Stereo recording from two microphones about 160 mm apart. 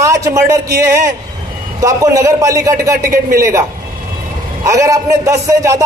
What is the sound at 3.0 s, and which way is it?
Speech, 60° right (ahead or behind).